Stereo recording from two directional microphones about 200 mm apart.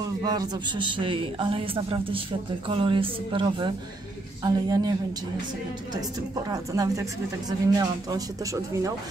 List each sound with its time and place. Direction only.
0.2 s a man's voice: 20° right (ahead or behind)
6.5 s speech: 15° right (ahead or behind)